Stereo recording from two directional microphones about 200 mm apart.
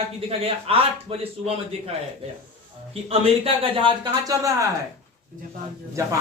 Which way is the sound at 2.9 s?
30° right (ahead or behind).